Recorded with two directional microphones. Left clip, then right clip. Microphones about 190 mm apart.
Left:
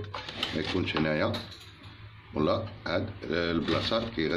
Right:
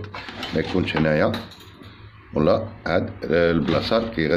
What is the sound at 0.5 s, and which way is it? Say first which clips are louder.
Speech: right 9 dB; 35° right (ahead or behind).